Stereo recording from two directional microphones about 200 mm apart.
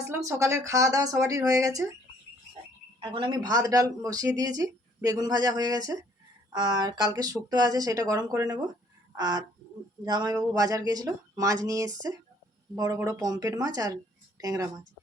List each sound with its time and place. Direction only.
0.1 s speech: 15° right (ahead or behind)
3.0 s speech: 25° right (ahead or behind)
9.1 s a sound: 20° right (ahead or behind)
10.0 s speech: 20° right (ahead or behind)